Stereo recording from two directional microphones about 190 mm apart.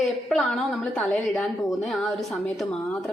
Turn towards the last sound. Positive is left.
turn(degrees=0)  # may be behind; listen again after turning